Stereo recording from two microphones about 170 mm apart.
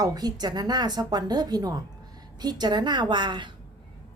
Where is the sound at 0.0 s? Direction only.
20° right (ahead or behind).